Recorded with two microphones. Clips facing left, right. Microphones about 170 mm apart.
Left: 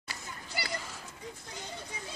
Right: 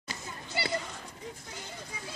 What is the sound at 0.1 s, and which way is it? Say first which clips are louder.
Children playing: right 4 dB; 25° right (ahead or behind).